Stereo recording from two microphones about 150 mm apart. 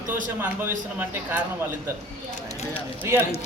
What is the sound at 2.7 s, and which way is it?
Speech, 10° right (ahead or behind).